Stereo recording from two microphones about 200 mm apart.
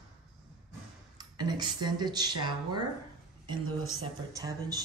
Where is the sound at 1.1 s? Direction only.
20° right (ahead or behind).